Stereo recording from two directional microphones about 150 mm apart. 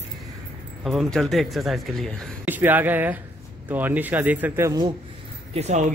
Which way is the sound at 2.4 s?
10° right (ahead or behind).